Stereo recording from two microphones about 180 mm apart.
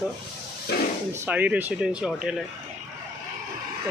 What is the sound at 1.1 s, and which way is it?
Speech, 10° right (ahead or behind).